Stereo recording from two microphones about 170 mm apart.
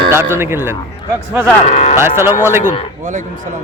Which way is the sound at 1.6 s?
40° left (ahead or behind).